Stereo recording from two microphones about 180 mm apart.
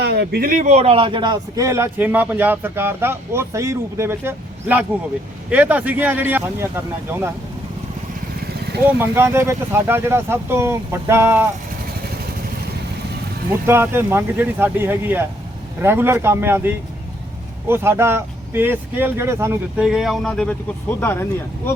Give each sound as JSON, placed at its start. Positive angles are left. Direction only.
{"t": 0.0, "sound": "a man's voice", "side_deg": -65}
{"t": 9.0, "sound": "a man's voice", "side_deg": -15}
{"t": 13.7, "sound": "a man's voice", "side_deg": -10}